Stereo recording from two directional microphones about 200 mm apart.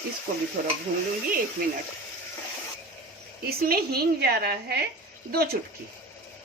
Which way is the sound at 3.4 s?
50° right (ahead or behind).